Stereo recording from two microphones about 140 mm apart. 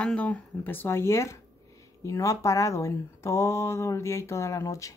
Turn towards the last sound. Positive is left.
turn(degrees=20)  # may be behind; listen again after turning